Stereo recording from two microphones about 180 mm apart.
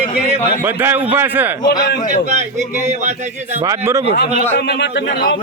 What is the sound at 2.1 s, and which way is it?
A man's voice, 40° right (ahead or behind).